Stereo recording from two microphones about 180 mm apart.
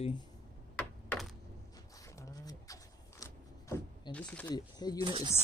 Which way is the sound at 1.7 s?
20° left (ahead or behind).